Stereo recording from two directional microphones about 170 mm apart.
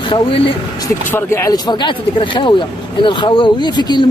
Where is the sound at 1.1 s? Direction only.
15° left (ahead or behind).